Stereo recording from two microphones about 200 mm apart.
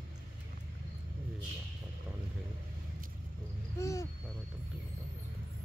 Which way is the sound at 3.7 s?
15° left (ahead or behind).